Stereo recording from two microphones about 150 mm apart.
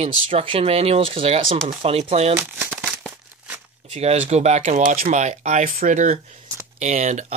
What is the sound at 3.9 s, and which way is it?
Speech, 45° right (ahead or behind).